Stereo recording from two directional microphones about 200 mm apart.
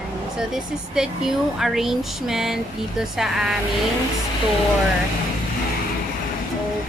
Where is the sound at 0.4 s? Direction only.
Centre (ahead or behind).